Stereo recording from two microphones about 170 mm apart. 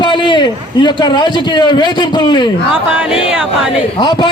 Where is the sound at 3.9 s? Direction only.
25° left (ahead or behind).